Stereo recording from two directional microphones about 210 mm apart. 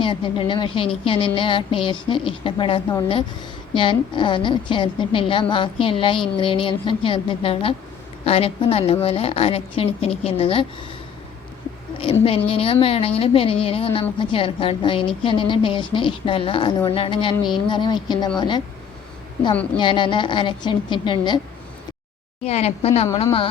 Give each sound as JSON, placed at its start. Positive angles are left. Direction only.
{"t": 0.0, "sound": "a woman's voice", "side_deg": 25}
{"t": 12.5, "sound": "a woman's voice", "side_deg": 25}
{"t": 19.7, "sound": "a woman's voice", "side_deg": 25}
{"t": 22.4, "sound": "a woman's voice", "side_deg": 30}